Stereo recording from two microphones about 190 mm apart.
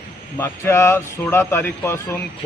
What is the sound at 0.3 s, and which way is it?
Speech, 15° left (ahead or behind).